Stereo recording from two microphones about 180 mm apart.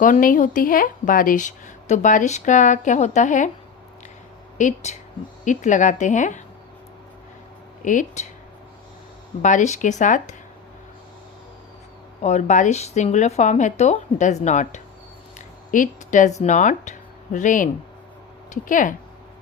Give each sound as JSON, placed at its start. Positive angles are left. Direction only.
{"t": 0.0, "sound": "a woman's voice", "side_deg": 50}
{"t": 4.5, "sound": "a woman's voice", "side_deg": 40}
{"t": 7.8, "sound": "a woman's voice", "side_deg": 45}
{"t": 9.4, "sound": "a woman's voice", "side_deg": 45}
{"t": 12.2, "sound": "a woman's voice", "side_deg": 40}